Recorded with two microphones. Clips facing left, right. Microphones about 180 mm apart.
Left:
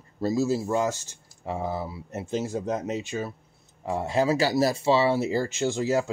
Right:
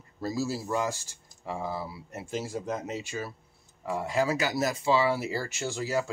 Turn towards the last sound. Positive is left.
turn(degrees=20)  # may be behind; listen again after turning